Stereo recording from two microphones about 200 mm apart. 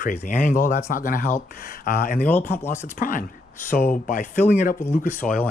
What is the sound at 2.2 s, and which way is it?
Speech, 10° left (ahead or behind).